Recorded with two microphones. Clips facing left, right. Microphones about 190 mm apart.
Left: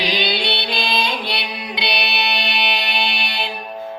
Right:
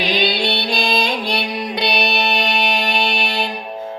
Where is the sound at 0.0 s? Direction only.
50° right (ahead or behind).